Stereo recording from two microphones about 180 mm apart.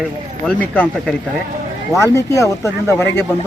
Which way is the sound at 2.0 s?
15° left (ahead or behind).